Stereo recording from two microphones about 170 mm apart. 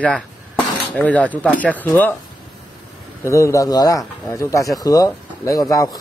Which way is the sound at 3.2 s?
15° left (ahead or behind).